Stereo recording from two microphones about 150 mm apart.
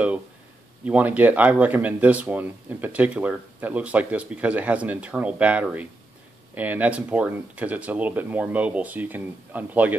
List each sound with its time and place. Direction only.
0.8 s speech: 10° right (ahead or behind)